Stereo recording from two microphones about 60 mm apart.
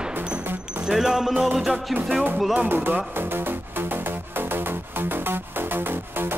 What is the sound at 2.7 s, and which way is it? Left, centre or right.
Music, right.